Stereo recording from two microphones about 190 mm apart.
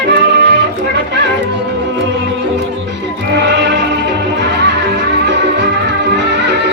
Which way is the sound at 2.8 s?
70° right (ahead or behind).